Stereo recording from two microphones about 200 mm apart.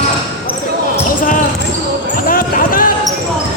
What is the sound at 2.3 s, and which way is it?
Basketball bounce, 45° left (ahead or behind).